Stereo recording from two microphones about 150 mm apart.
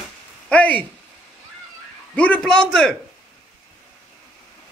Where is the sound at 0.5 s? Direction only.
10° left (ahead or behind).